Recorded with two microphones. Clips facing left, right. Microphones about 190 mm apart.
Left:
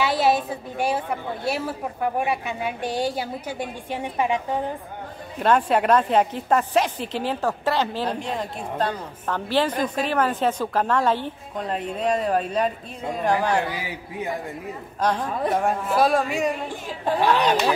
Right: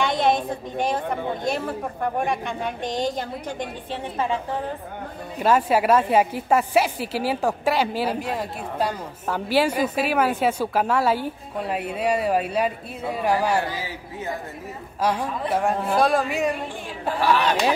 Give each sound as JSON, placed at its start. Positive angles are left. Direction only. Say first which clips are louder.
{"t": 0.0, "sound": "a woman's voice", "louder": "even", "side_deg": 5}
{"t": 5.4, "sound": "a woman's voice", "louder": "even", "side_deg": -5}
{"t": 13.7, "sound": "a woman's voice", "louder": "left 1 dB", "side_deg": 15}
{"t": 15.0, "sound": "a woman's voice", "louder": "even", "side_deg": -5}
{"t": 17.2, "sound": "a woman's voice", "louder": "left 1 dB", "side_deg": 15}